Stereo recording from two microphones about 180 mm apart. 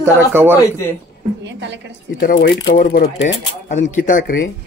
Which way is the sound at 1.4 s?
80° right.